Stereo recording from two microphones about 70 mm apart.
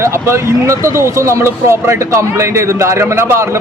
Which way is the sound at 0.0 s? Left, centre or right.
Right.